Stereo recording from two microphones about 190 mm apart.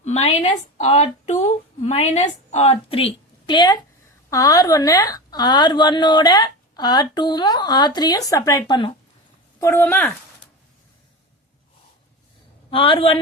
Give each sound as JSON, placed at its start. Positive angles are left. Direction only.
{"t": 0.0, "sound": "a woman's voice", "side_deg": 35}
{"t": 9.6, "sound": "speech", "side_deg": 15}
{"t": 12.7, "sound": "a woman's voice", "side_deg": 30}